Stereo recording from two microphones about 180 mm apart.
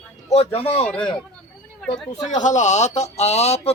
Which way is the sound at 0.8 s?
5° left (ahead or behind).